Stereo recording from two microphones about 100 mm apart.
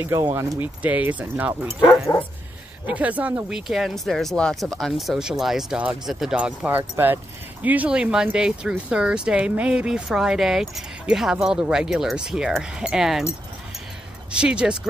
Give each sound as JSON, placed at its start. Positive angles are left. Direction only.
{"t": 0.0, "sound": "speech", "side_deg": -25}
{"t": 0.6, "sound": "speech", "side_deg": -15}
{"t": 2.9, "sound": "speech", "side_deg": -15}
{"t": 6.8, "sound": "speech", "side_deg": -20}
{"t": 14.3, "sound": "speech", "side_deg": -10}